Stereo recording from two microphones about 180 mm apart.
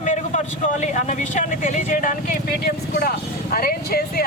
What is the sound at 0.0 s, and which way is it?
Speech, 40° left (ahead or behind).